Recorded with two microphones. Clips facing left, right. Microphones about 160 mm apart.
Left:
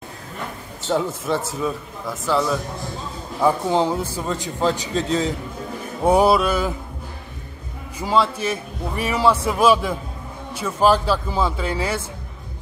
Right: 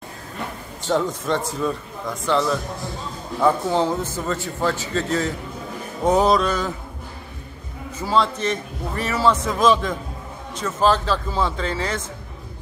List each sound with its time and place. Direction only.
0.8 s a man's voice: 5° left (ahead or behind)
8.0 s a man's voice: 10° left (ahead or behind)